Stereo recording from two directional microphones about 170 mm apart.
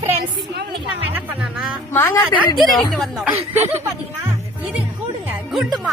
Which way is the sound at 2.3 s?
Centre (ahead or behind).